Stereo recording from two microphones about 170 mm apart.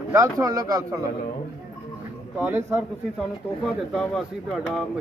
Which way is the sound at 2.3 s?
10° right (ahead or behind).